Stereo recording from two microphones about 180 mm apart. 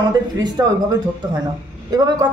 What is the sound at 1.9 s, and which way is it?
Speech, 20° right (ahead or behind).